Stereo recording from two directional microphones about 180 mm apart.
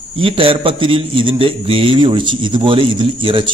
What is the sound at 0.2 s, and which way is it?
A man's voice, 30° right (ahead or behind).